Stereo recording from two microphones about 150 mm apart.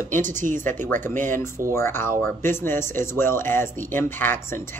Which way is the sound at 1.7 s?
15° left (ahead or behind).